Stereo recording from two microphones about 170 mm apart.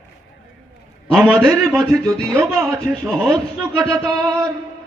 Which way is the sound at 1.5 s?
20° right (ahead or behind).